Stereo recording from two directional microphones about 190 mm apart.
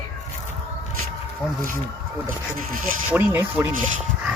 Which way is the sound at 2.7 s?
45° right (ahead or behind).